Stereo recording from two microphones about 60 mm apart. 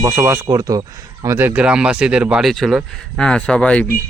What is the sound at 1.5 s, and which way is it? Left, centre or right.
Speech, centre.